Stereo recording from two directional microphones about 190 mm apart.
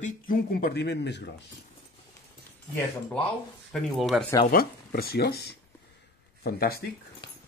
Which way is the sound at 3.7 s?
Centre (ahead or behind).